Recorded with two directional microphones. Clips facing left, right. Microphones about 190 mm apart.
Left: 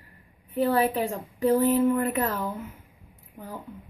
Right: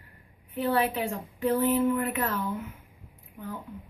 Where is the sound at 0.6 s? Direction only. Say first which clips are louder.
Left 3 dB; 40° left (ahead or behind).